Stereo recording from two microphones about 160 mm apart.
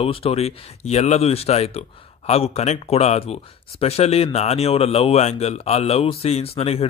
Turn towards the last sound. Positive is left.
turn(degrees=40)  # may be behind; listen again after turning